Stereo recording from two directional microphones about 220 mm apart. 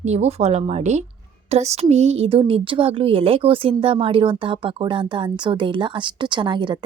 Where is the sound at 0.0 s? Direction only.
30° right (ahead or behind).